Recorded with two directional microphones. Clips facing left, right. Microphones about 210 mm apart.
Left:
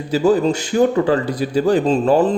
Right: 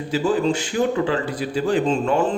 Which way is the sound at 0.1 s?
40° left (ahead or behind).